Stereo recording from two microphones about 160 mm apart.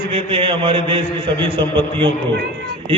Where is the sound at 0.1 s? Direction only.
35° right (ahead or behind).